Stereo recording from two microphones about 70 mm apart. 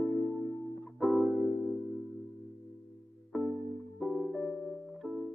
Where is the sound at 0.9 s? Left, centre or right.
Centre.